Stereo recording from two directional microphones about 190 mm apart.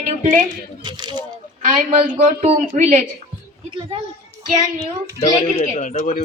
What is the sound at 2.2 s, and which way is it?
Speech, 45° right (ahead or behind).